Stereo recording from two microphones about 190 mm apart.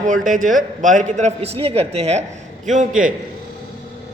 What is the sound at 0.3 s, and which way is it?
A man's voice, 45° right (ahead or behind).